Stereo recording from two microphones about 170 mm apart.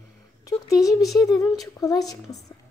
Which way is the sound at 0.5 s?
20° left (ahead or behind).